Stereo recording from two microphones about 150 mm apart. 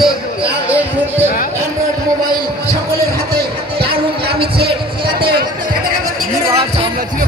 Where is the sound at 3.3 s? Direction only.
90° right.